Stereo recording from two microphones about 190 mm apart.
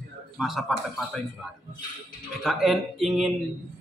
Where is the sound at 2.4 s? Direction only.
Centre (ahead or behind).